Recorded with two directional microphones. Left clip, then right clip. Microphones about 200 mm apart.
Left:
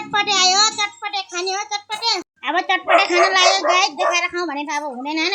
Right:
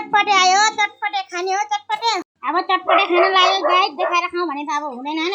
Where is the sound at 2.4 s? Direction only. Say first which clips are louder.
Right 1 dB; 15° left (ahead or behind).